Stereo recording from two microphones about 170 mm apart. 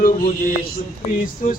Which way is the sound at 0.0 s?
55° left (ahead or behind).